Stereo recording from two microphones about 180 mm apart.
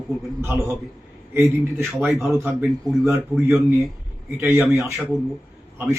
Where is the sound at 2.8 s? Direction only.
20° right (ahead or behind).